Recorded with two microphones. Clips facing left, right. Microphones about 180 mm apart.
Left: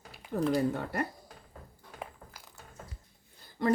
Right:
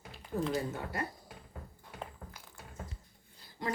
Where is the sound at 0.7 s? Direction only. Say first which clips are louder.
Left 5 dB; 65° left (ahead or behind).